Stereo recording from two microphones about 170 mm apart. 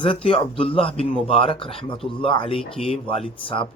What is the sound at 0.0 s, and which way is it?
Speech, 30° left (ahead or behind).